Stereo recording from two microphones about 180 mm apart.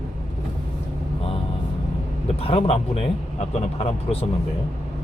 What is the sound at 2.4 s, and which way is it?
Speech, 35° left (ahead or behind).